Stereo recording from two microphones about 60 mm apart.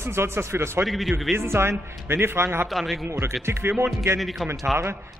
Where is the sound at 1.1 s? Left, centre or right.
Right.